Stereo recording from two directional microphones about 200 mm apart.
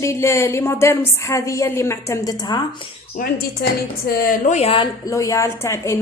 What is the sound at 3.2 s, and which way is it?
A woman's voice, 50° left (ahead or behind).